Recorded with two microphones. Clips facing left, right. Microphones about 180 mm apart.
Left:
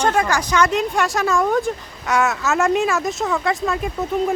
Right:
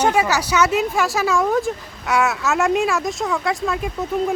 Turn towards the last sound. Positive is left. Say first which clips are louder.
# left 1 dB
turn(degrees=0)  # may be behind; listen again after turning